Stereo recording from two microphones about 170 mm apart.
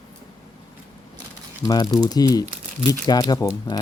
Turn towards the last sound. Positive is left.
turn(degrees=20)  # may be behind; listen again after turning